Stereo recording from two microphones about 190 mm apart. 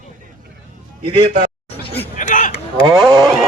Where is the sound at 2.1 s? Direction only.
40° left (ahead or behind).